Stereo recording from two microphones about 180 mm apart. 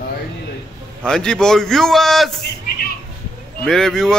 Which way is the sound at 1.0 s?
5° left (ahead or behind).